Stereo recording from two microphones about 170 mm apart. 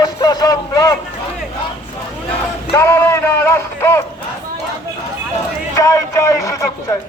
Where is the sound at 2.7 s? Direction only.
15° left (ahead or behind).